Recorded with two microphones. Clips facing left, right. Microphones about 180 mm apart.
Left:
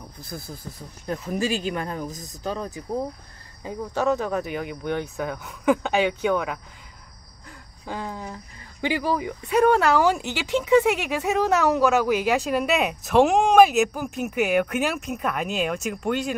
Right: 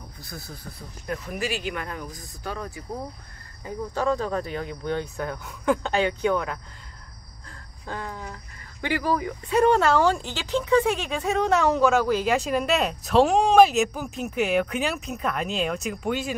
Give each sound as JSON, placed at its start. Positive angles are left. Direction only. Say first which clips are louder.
{"t": 1.0, "sound": "speech", "louder": "left 4 dB", "side_deg": 30}
{"t": 4.2, "sound": "speech", "louder": "left 1 dB", "side_deg": 10}
{"t": 5.1, "sound": "speech", "louder": "left 2 dB", "side_deg": 5}
{"t": 7.8, "sound": "speech", "louder": "left 2 dB", "side_deg": 15}
{"t": 9.6, "sound": "speech", "louder": "left 1 dB", "side_deg": 5}